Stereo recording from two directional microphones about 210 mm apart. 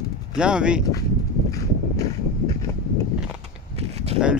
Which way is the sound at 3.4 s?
30° right (ahead or behind).